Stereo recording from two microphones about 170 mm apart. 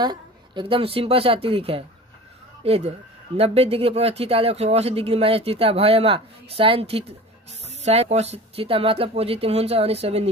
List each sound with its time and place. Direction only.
0.0 s speech: 25° right (ahead or behind)